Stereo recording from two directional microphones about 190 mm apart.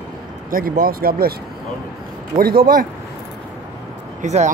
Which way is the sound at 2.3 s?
50° right (ahead or behind).